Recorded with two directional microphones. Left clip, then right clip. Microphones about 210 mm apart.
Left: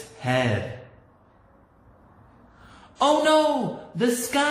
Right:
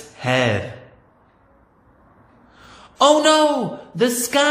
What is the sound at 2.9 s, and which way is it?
Speech, 45° right (ahead or behind).